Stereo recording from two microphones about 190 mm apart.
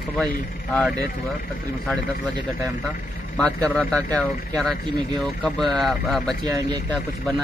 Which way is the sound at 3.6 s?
5° left (ahead or behind).